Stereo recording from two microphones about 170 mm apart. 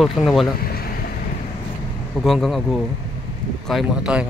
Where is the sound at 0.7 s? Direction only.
65° left (ahead or behind).